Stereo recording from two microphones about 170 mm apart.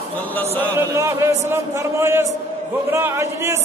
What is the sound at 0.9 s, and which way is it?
A man's voice, 15° right (ahead or behind).